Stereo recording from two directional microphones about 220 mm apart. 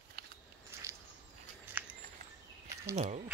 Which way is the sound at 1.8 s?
10° right (ahead or behind).